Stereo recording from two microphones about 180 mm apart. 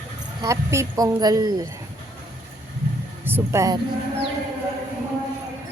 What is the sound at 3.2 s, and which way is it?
Speech, 15° right (ahead or behind).